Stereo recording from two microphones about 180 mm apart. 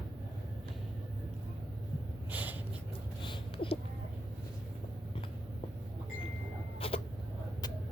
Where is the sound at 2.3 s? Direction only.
10° right (ahead or behind).